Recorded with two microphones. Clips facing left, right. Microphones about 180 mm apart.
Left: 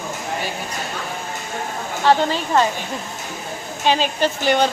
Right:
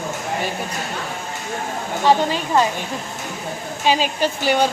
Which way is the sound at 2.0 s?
10° right (ahead or behind).